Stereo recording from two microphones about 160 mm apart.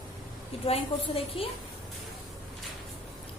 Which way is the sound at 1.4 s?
35° left (ahead or behind).